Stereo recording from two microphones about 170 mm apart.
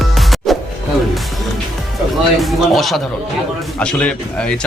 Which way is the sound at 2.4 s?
Centre (ahead or behind).